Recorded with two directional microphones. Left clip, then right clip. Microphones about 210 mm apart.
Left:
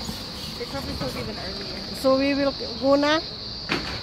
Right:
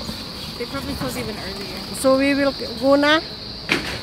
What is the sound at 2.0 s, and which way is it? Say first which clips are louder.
Speech: right 4 dB; 10° right (ahead or behind).